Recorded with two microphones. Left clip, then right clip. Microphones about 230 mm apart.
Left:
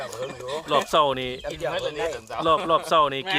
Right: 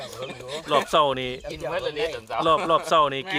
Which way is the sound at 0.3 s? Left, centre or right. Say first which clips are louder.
Right 1 dB; centre.